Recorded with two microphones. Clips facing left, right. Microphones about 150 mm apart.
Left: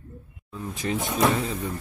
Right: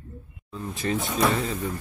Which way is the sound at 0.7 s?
15° left (ahead or behind).